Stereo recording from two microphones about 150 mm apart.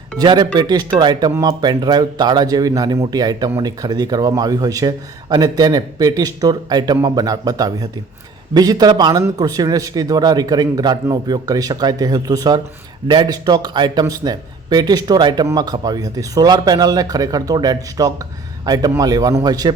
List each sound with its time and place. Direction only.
0.2 s speech: 30° right (ahead or behind)